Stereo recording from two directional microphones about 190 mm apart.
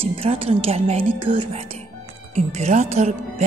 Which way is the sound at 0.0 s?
30° right (ahead or behind).